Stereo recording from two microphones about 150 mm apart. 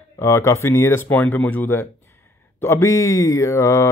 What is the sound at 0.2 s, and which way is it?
Speech, 20° left (ahead or behind).